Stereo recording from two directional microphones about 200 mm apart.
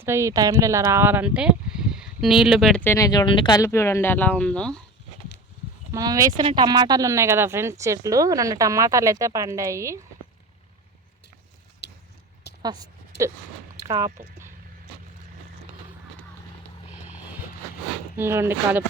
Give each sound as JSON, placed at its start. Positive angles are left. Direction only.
{"t": 0.0, "sound": "speech", "side_deg": -15}
{"t": 5.9, "sound": "speech", "side_deg": -20}
{"t": 11.8, "sound": "a sound", "side_deg": 55}
{"t": 12.6, "sound": "a woman's voice", "side_deg": -20}
{"t": 18.2, "sound": "speech", "side_deg": -10}